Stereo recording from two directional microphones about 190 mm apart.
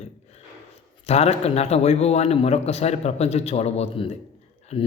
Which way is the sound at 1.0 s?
35° left (ahead or behind).